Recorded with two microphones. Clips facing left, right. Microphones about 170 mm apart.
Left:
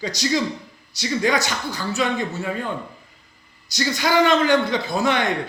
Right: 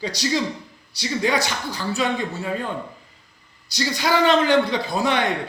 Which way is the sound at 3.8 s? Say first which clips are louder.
Left 1 dB; 30° right (ahead or behind).